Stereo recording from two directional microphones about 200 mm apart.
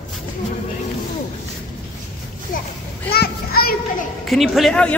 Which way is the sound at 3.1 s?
50° left (ahead or behind).